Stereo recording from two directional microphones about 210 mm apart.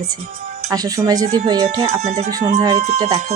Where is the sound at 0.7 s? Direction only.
15° right (ahead or behind).